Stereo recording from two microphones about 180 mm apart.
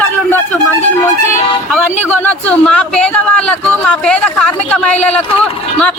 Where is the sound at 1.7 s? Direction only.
10° left (ahead or behind).